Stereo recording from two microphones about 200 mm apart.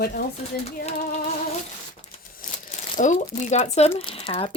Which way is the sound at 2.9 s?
40° left (ahead or behind).